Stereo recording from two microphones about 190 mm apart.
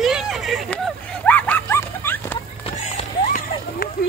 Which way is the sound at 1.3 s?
10° left (ahead or behind).